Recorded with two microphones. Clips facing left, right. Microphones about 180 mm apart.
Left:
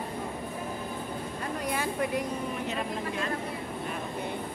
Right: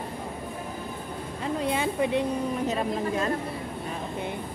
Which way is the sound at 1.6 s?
25° right (ahead or behind).